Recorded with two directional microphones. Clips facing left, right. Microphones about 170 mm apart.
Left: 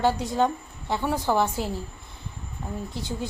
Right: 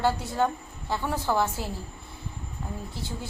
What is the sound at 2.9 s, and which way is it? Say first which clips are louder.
Speech: left 5 dB; 15° left (ahead or behind).